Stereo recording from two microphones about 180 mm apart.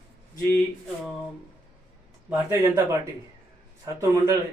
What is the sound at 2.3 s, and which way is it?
Speech, 15° right (ahead or behind).